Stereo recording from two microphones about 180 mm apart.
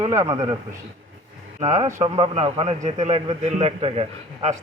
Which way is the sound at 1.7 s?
20° right (ahead or behind).